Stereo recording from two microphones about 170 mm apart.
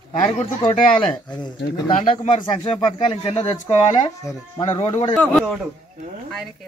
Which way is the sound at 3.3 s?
40° left (ahead or behind).